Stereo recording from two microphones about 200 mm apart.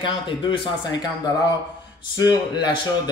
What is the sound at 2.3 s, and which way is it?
Speech, 20° left (ahead or behind).